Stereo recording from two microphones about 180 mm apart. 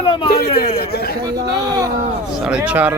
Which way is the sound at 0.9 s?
60° left (ahead or behind).